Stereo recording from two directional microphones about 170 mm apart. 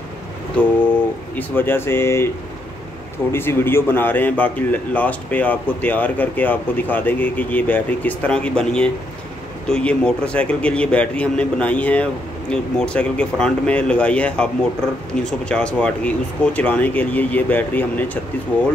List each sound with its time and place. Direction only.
0.6 s speech: 10° left (ahead or behind)